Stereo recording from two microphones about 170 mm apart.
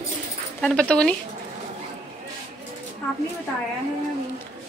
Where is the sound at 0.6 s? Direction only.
5° left (ahead or behind).